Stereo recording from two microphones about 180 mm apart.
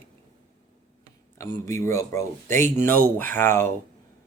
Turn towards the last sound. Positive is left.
turn(degrees=10)  # may be behind; listen again after turning